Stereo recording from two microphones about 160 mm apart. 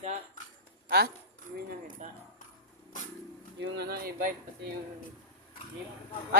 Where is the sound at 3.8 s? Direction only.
75° right (ahead or behind).